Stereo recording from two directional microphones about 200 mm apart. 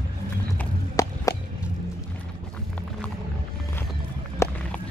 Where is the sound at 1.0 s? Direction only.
15° left (ahead or behind).